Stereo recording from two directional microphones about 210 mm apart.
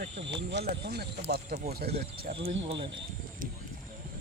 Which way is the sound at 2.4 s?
25° right (ahead or behind).